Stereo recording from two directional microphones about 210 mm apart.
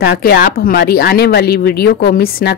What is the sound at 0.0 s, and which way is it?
A woman's voice, 50° left (ahead or behind).